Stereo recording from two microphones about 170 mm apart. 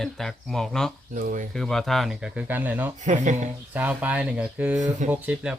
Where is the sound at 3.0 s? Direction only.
45° right (ahead or behind).